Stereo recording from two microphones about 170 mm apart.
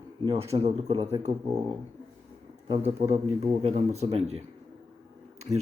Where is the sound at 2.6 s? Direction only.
40° right (ahead or behind).